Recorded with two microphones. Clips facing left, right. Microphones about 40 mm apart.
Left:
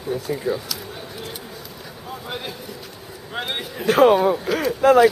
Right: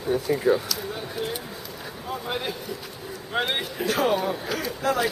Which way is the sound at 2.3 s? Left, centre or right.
Centre.